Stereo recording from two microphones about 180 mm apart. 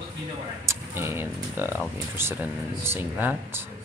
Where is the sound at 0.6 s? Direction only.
15° right (ahead or behind).